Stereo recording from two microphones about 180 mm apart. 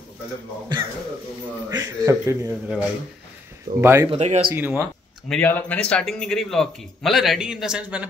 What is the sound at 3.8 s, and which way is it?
Speech, 15° right (ahead or behind).